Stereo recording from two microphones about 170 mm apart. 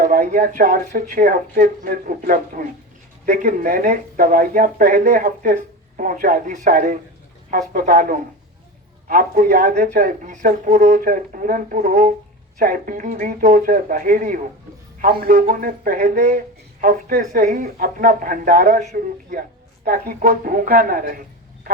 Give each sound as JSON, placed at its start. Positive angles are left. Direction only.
{"t": 0.0, "sound": "speech", "side_deg": -55}